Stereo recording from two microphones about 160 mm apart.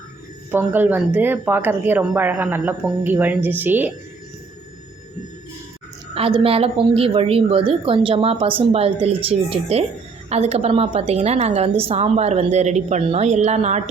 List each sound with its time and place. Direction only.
0.5 s speech: 10° right (ahead or behind)
6.1 s a woman's voice: 35° right (ahead or behind)